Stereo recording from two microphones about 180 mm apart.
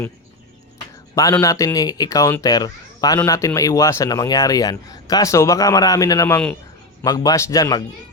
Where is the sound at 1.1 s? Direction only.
20° left (ahead or behind).